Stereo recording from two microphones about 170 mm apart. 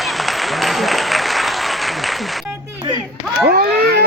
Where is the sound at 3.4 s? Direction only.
65° right (ahead or behind).